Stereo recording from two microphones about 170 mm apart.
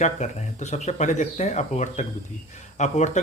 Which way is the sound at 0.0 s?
45° left (ahead or behind).